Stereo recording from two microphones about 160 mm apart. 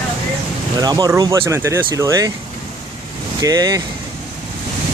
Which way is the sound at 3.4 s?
25° right (ahead or behind).